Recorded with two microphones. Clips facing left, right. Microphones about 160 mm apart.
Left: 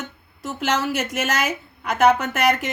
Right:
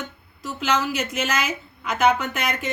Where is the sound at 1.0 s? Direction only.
65° left (ahead or behind).